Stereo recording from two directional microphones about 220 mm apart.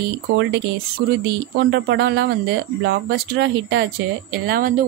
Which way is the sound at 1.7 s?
50° right (ahead or behind).